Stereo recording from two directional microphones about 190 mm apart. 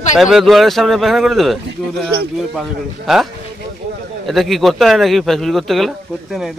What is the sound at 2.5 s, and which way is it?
Speech, centre (ahead or behind).